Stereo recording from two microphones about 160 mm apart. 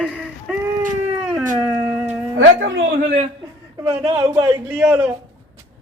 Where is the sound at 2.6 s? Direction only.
50° right (ahead or behind).